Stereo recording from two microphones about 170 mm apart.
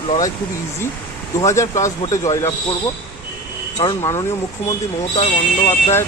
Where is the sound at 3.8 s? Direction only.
20° left (ahead or behind).